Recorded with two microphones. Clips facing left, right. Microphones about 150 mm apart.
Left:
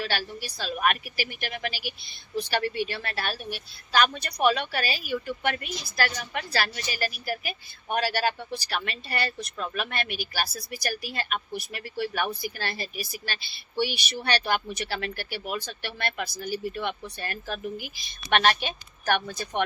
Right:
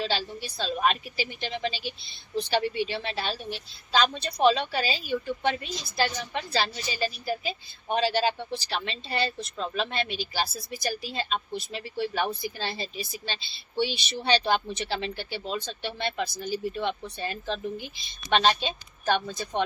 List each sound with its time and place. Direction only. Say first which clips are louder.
0.0 s a woman's voice: right 1 dB; 20° right (ahead or behind)